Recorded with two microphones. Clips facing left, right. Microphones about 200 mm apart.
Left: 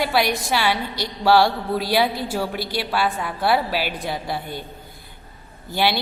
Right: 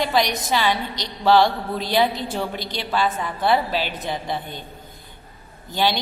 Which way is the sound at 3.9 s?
20° right (ahead or behind).